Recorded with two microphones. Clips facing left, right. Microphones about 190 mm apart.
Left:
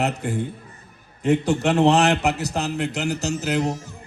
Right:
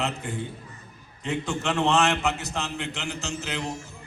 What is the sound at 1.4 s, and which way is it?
A man's voice, 40° left (ahead or behind).